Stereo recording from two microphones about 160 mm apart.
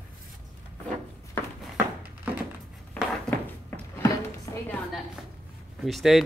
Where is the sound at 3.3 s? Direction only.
15° left (ahead or behind).